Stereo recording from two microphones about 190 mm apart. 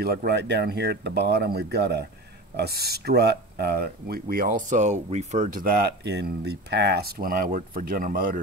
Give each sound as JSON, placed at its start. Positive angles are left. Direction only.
{"t": 0.0, "sound": "speech", "side_deg": -55}